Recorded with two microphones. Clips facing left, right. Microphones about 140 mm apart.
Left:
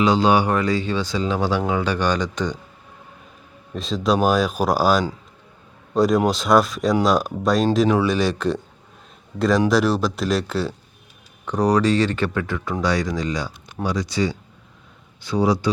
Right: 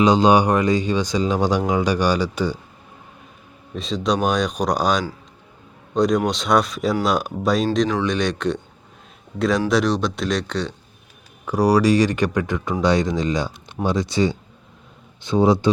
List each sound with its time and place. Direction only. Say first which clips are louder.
0.0 s speech: right 2 dB; 20° right (ahead or behind)
3.8 s speech: left 1 dB; centre (ahead or behind)
11.4 s speech: right 2 dB; 10° right (ahead or behind)